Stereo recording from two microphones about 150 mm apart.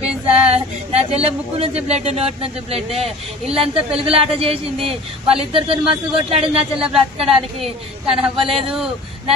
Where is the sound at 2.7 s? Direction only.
40° right (ahead or behind).